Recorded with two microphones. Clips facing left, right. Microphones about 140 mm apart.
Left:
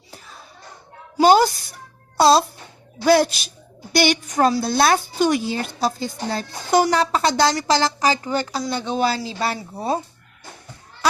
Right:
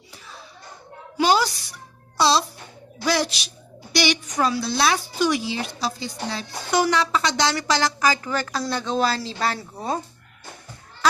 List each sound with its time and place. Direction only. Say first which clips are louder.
1.2 s a woman's voice: left 6 dB; 50° left (ahead or behind); by 8.4 s 30° left (ahead or behind)
8.7 s speech: left 1 dB; 15° left (ahead or behind)
9.4 s speech: left 1 dB; 30° left (ahead or behind)